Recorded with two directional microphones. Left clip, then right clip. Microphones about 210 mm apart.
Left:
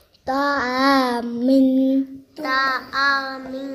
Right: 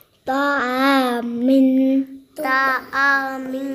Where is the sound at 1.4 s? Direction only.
10° right (ahead or behind).